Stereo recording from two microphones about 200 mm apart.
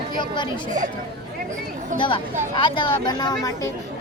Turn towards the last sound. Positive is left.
turn(degrees=20)  # may be behind; listen again after turning